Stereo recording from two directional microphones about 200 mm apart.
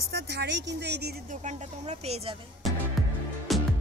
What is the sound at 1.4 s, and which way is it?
Speech, 35° right (ahead or behind).